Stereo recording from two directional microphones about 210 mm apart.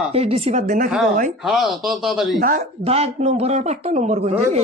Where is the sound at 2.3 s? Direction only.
40° right (ahead or behind).